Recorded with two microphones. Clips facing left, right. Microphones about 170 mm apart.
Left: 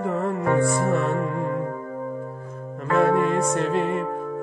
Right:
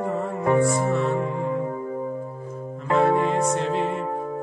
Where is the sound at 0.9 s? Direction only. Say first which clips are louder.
Even; 50° left (ahead or behind).